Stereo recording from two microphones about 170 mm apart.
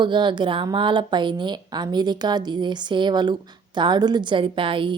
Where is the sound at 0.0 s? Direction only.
25° right (ahead or behind).